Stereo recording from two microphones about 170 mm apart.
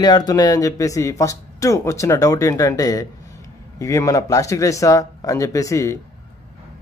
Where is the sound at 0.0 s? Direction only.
25° left (ahead or behind).